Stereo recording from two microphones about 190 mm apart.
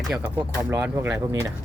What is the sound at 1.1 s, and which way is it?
Speech, 15° right (ahead or behind).